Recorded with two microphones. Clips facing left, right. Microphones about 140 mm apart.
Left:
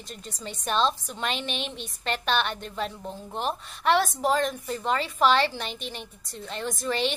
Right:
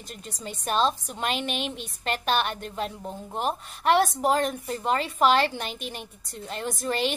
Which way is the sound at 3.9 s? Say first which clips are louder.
Right 2 dB; 45° right (ahead or behind).